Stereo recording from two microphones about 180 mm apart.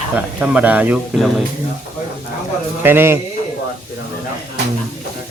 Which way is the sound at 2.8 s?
10° right (ahead or behind).